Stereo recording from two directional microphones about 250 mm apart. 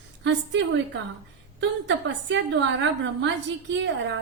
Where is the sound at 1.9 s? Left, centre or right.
Right.